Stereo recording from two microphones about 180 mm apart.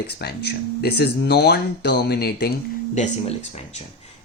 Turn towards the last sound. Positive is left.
turn(degrees=40)  # may be behind; listen again after turning